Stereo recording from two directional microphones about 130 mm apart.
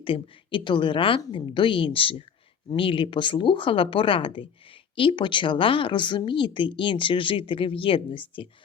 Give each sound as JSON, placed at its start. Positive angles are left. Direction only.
{"t": 0.0, "sound": "speech", "side_deg": 40}